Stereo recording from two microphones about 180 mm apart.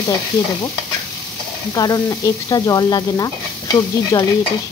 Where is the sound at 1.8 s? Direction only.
20° left (ahead or behind).